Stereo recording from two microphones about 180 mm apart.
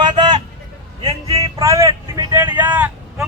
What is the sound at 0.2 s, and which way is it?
Vehicle, 25° right (ahead or behind).